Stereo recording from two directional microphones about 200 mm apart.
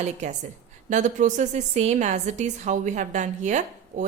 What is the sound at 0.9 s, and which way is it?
A woman's voice, 40° right (ahead or behind).